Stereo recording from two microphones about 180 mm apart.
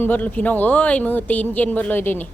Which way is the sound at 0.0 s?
10° left (ahead or behind).